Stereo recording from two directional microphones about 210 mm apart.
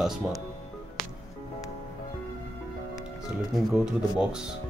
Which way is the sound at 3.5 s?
5° right (ahead or behind).